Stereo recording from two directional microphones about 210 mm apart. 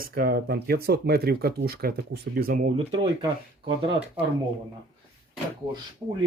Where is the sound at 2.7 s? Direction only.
30° right (ahead or behind).